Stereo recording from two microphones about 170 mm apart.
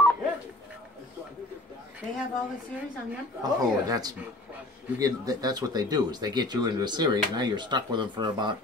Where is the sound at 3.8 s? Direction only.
20° right (ahead or behind).